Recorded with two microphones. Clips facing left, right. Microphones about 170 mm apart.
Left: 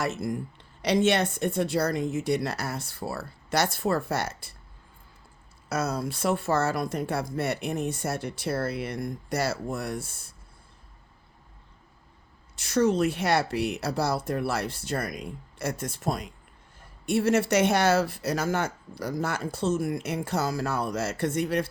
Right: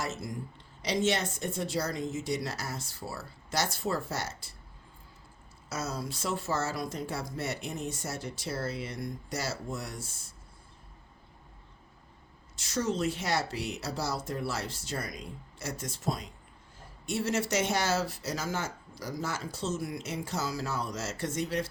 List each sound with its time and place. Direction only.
0.0 s speech: 60° left (ahead or behind)
5.6 s speech: 60° left (ahead or behind)
12.5 s speech: 60° left (ahead or behind)